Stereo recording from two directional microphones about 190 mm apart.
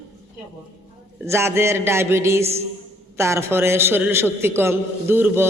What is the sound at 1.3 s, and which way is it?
A man's voice, 15° right (ahead or behind).